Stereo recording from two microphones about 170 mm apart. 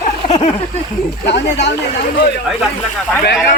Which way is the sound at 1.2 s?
90° left.